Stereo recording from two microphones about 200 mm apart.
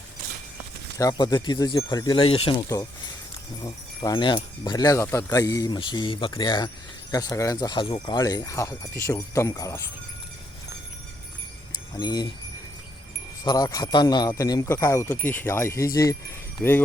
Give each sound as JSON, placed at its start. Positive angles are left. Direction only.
{"t": 0.9, "sound": "speech", "side_deg": 20}
{"t": 11.9, "sound": "speech", "side_deg": 20}
{"t": 13.4, "sound": "speech", "side_deg": 20}